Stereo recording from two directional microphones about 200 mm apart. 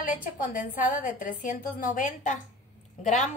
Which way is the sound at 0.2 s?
40° left (ahead or behind).